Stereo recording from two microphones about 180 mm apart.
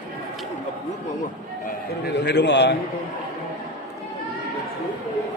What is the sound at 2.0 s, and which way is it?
Speech, 70° left (ahead or behind).